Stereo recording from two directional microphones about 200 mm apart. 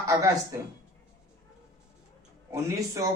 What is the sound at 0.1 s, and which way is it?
Speech, 15° right (ahead or behind).